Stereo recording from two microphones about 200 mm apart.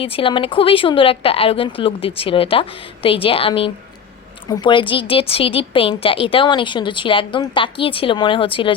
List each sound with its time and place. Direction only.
0.0 s speech: 25° left (ahead or behind)